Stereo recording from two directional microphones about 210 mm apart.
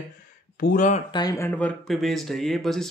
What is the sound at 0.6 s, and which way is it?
Speech, 35° left (ahead or behind).